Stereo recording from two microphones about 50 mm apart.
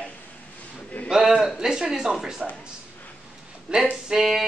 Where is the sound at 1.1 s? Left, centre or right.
Centre.